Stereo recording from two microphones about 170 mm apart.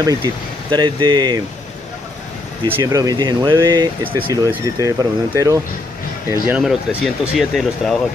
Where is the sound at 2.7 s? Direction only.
20° right (ahead or behind).